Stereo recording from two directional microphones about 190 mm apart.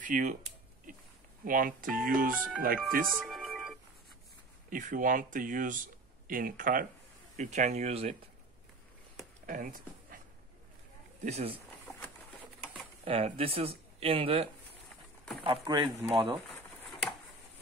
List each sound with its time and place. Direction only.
0.0 s speech: 40° right (ahead or behind)
1.4 s speech: 45° right (ahead or behind)
3.1 s music: centre (ahead or behind)
4.6 s speech: 45° right (ahead or behind)
9.5 s speech: 45° right (ahead or behind)
11.2 s speech: 35° right (ahead or behind)
13.0 s speech: 30° right (ahead or behind)